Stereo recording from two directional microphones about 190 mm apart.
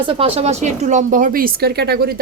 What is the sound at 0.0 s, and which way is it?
A woman's voice, 30° right (ahead or behind).